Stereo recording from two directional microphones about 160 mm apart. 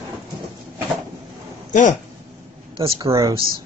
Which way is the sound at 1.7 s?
50° left (ahead or behind).